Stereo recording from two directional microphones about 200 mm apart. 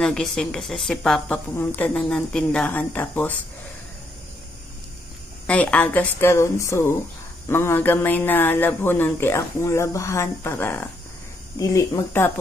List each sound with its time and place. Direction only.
0.0 s a woman's voice: 5° left (ahead or behind)
5.5 s a man's voice: 5° left (ahead or behind)